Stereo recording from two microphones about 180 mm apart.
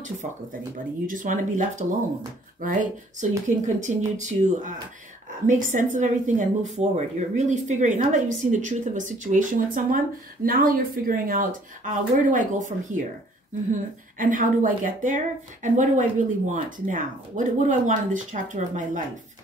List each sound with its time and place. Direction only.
0.0 s speech: 45° right (ahead or behind)